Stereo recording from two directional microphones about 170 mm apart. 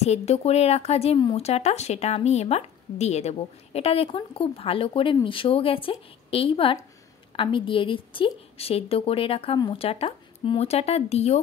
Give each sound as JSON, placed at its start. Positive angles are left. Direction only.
{"t": 0.0, "sound": "speech", "side_deg": 40}